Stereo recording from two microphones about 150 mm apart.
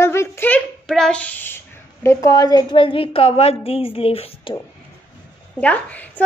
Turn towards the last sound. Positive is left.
turn(degrees=10)  # may be behind; listen again after turning